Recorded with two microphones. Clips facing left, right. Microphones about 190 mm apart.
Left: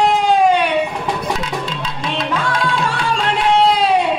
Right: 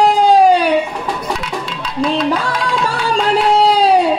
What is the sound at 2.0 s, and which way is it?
Music, 35° right (ahead or behind).